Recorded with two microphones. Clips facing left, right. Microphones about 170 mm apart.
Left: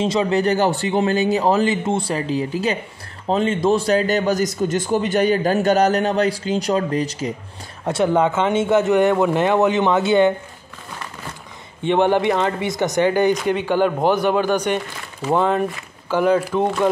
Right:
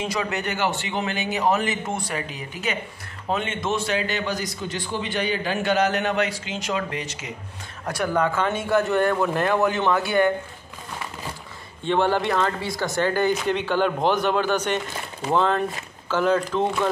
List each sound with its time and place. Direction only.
0.0 s a man's voice: 25° left (ahead or behind)
7.8 s speech: 25° left (ahead or behind)
11.8 s speech: 20° left (ahead or behind)